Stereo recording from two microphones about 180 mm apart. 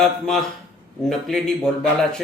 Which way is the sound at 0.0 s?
5° left (ahead or behind).